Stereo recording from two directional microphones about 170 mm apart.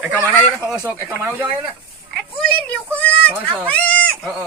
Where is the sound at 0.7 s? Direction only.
10° right (ahead or behind).